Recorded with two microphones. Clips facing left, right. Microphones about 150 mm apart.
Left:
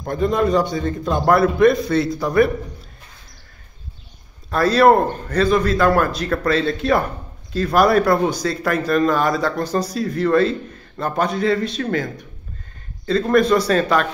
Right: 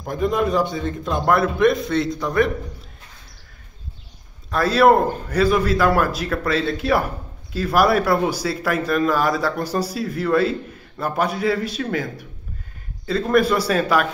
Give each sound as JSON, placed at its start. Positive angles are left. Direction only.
{"t": 0.0, "sound": "a man's voice", "side_deg": -5}
{"t": 4.5, "sound": "a man's voice", "side_deg": 0}